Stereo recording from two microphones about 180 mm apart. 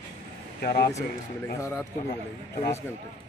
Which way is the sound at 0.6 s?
65° left (ahead or behind).